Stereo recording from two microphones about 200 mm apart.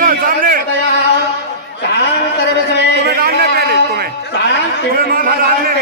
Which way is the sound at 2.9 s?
50° right (ahead or behind).